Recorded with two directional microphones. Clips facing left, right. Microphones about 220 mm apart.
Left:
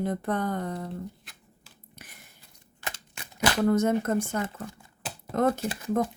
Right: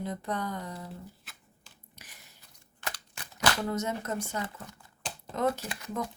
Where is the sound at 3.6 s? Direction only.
50° left (ahead or behind).